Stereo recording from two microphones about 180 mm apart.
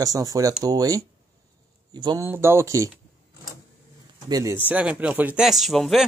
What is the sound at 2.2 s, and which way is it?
Speech, 15° right (ahead or behind).